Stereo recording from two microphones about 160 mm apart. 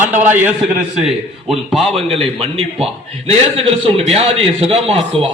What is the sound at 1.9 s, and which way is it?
A man's voice, 35° right (ahead or behind).